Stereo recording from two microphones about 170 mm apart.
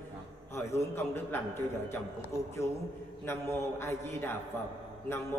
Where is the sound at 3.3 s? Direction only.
15° left (ahead or behind).